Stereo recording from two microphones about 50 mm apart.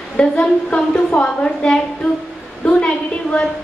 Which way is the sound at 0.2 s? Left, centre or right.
Centre.